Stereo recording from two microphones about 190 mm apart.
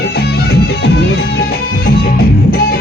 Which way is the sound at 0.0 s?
55° left (ahead or behind).